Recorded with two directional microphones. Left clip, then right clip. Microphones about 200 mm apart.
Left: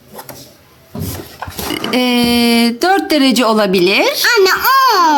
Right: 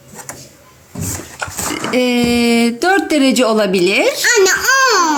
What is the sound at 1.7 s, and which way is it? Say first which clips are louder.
Speech: left 1 dB; 5° left (ahead or behind).